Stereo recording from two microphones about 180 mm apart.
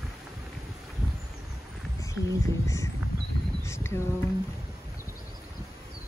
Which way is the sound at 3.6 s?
15° left (ahead or behind).